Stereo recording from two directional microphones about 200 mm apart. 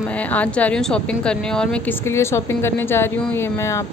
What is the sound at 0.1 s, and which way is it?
A woman's voice, 5° left (ahead or behind).